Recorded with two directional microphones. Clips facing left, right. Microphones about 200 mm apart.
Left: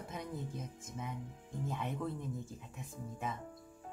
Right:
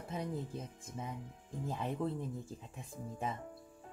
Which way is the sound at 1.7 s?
30° right (ahead or behind).